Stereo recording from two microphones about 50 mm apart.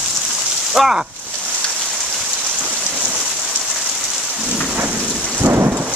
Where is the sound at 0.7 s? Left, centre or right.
Centre.